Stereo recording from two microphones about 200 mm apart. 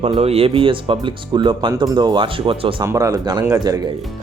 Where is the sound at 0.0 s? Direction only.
30° right (ahead or behind).